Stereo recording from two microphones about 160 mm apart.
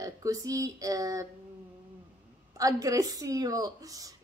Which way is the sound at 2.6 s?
20° right (ahead or behind).